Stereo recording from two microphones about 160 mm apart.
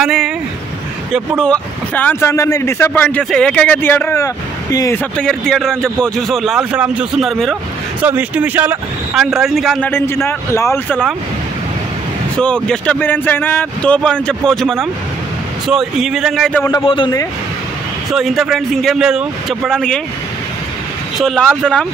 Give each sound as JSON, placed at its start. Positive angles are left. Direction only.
{"t": 0.0, "sound": "vehicle", "side_deg": 0}
{"t": 1.1, "sound": "speech", "side_deg": 0}
{"t": 5.1, "sound": "a man's voice", "side_deg": 5}
{"t": 8.0, "sound": "a man's voice", "side_deg": -10}
{"t": 9.8, "sound": "speech", "side_deg": 15}
{"t": 12.6, "sound": "a man's voice", "side_deg": 5}
{"t": 16.8, "sound": "a man's voice", "side_deg": 30}
{"t": 18.1, "sound": "a man's voice", "side_deg": 0}
{"t": 21.2, "sound": "a man's voice", "side_deg": 0}